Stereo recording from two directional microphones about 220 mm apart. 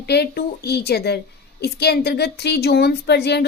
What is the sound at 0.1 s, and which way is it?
Speech, 45° left (ahead or behind).